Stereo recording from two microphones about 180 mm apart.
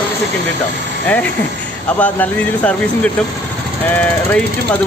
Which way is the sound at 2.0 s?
10° left (ahead or behind).